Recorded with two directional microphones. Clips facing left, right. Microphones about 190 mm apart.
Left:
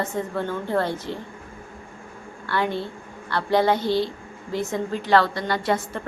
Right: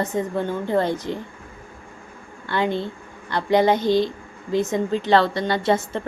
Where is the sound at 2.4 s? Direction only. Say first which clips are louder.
Right 2 dB; 20° right (ahead or behind).